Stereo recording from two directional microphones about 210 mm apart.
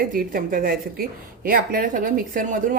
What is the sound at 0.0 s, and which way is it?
A woman's voice, 45° right (ahead or behind).